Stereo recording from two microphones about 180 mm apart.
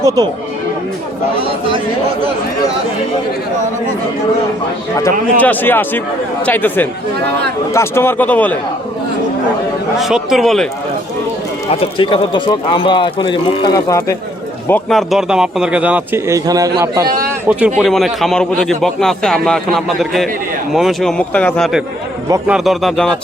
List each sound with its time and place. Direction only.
5.4 s speech: 10° left (ahead or behind)
10.0 s a man's voice: 5° right (ahead or behind)
11.7 s speech: 30° left (ahead or behind)
14.7 s a man's voice: centre (ahead or behind); by 17.1 s 20° right (ahead or behind)
17.7 s a man's voice: centre (ahead or behind)